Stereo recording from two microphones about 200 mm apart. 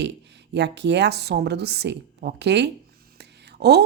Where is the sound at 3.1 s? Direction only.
55° right (ahead or behind).